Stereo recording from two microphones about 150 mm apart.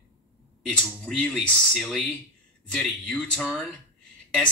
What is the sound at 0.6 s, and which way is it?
Speech, 5° left (ahead or behind).